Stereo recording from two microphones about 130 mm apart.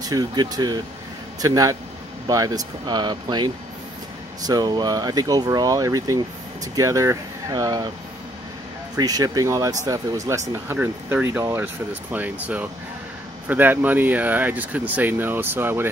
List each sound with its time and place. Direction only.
0.0 s speech: 30° right (ahead or behind)
8.9 s speech: 30° right (ahead or behind)